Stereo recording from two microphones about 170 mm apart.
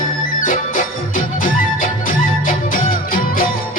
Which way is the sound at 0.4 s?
50° left (ahead or behind).